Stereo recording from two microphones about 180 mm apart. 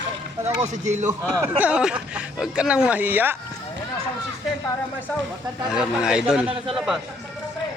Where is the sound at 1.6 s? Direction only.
5° right (ahead or behind).